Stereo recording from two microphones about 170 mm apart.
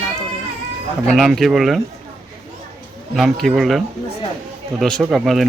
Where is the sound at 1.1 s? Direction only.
Centre (ahead or behind).